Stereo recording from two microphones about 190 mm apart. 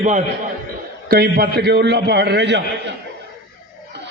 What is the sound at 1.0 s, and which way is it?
A man's voice, 55° right (ahead or behind).